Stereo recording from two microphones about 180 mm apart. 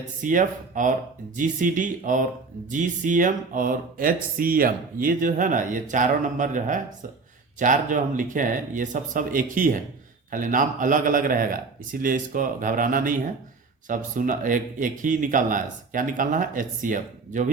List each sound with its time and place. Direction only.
0.2 s speech: 45° right (ahead or behind)